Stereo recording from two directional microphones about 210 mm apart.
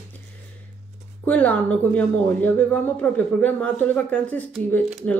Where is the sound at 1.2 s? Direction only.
5° left (ahead or behind).